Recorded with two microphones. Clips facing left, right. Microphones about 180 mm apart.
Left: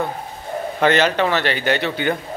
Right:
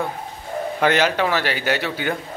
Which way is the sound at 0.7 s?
10° right (ahead or behind).